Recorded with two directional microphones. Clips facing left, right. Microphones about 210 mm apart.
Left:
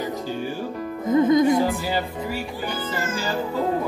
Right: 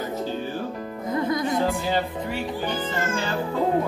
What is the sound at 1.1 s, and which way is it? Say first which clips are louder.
Music: left 8 dB; 20° left (ahead or behind).